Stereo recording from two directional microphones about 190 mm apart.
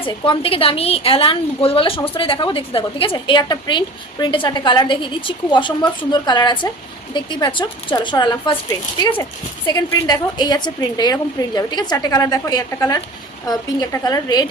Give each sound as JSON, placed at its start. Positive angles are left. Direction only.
{"t": 0.0, "sound": "a woman's voice", "side_deg": 30}
{"t": 9.6, "sound": "a woman's voice", "side_deg": 20}